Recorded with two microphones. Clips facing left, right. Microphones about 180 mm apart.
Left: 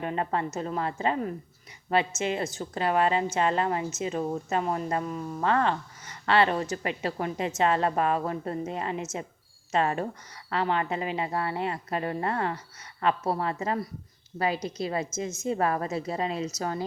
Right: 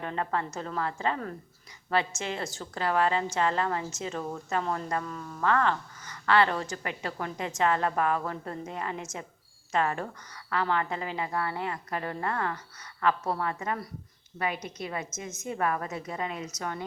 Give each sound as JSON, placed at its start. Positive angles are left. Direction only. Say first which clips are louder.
{"t": 0.0, "sound": "a woman's voice", "louder": "left 2 dB", "side_deg": 20}